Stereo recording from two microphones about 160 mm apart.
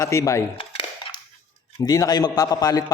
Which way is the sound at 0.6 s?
35° left (ahead or behind).